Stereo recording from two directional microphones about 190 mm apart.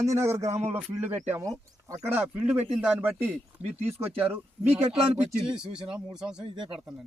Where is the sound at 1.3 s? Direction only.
15° right (ahead or behind).